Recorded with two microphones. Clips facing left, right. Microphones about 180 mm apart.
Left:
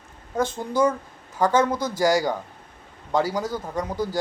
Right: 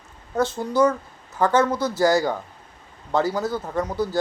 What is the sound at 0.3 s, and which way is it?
Speech, 15° left (ahead or behind).